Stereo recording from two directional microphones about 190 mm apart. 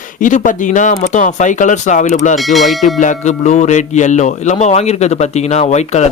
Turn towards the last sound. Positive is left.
turn(degrees=35)  # may be behind; listen again after turning